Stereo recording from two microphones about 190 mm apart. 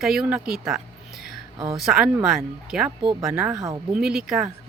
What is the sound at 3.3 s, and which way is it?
Speech, 15° right (ahead or behind).